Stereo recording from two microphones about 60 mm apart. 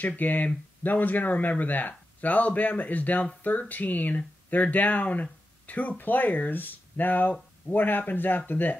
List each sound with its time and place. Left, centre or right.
0.0 s speech: left